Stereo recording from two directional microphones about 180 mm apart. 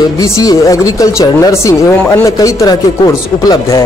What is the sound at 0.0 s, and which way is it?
Speech, 20° left (ahead or behind).